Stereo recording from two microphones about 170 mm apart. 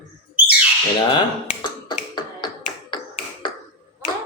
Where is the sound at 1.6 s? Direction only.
25° left (ahead or behind).